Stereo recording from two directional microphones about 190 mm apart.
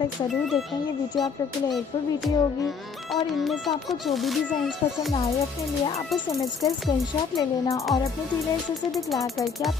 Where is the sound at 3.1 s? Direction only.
Centre (ahead or behind).